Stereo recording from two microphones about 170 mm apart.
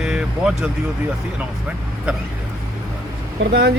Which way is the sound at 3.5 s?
80° right.